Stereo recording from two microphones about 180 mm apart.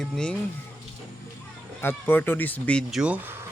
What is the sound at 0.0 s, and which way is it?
Speech, 5° left (ahead or behind).